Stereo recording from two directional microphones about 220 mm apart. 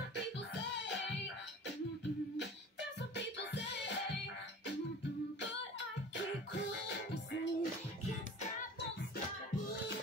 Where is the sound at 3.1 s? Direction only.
50° left (ahead or behind).